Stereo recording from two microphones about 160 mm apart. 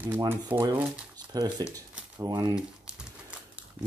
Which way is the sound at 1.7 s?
25° right (ahead or behind).